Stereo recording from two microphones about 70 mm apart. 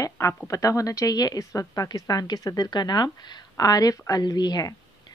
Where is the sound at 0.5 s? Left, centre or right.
Left.